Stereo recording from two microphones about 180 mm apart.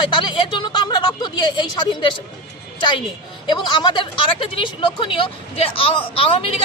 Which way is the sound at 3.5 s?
25° left (ahead or behind).